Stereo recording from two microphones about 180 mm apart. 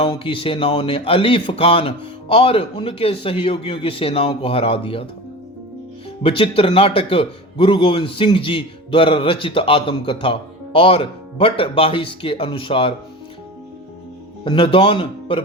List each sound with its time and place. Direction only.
0.0 s a man's voice: 30° left (ahead or behind)
6.2 s a man's voice: 30° left (ahead or behind)
14.4 s a man's voice: 30° left (ahead or behind)